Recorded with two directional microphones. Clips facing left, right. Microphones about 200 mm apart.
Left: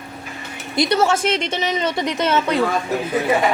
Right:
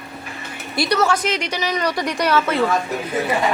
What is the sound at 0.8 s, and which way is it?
A woman's voice, 25° left (ahead or behind).